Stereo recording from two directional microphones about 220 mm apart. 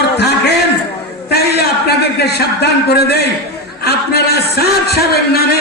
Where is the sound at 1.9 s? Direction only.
45° left (ahead or behind).